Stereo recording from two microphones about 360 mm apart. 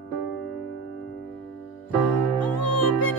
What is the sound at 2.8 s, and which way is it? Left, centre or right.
Music, left.